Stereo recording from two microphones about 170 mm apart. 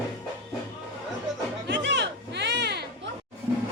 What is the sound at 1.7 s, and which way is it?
Music, 90° right.